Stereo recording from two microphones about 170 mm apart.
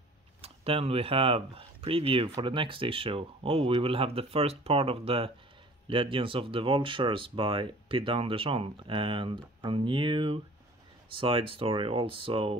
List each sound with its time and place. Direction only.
0.4 s speech: 35° right (ahead or behind)